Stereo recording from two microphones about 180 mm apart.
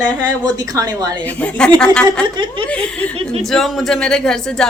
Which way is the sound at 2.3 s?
25° right (ahead or behind).